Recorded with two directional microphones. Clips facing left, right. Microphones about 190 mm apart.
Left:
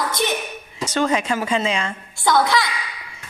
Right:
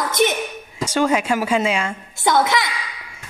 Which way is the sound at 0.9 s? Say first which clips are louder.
Right 2 dB; 10° right (ahead or behind).